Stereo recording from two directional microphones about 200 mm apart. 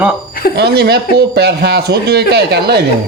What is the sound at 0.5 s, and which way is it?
A man's voice, 55° right (ahead or behind).